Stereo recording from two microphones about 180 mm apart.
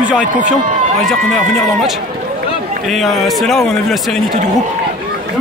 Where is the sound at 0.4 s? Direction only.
45° right (ahead or behind).